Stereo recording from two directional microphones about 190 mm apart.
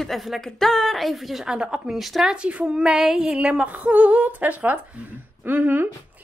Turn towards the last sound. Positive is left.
turn(degrees=-10)  # may be behind; listen again after turning